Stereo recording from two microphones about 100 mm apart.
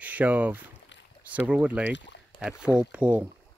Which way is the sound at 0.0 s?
15° right (ahead or behind).